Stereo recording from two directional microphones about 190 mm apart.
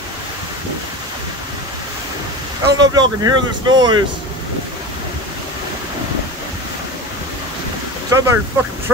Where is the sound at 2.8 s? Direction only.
20° right (ahead or behind).